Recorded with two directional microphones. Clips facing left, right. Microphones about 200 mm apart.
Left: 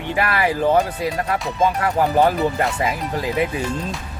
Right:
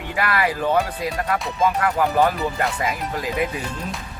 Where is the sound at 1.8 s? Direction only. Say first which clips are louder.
Left 3 dB; 30° left (ahead or behind).